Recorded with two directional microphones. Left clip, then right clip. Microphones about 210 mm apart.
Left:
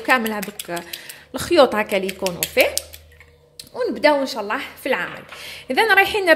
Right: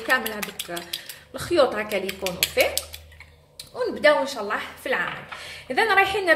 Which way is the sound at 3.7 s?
35° left (ahead or behind).